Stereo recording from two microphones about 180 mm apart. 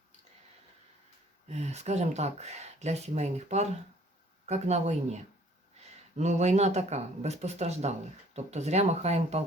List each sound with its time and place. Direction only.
1.5 s speech: 40° right (ahead or behind)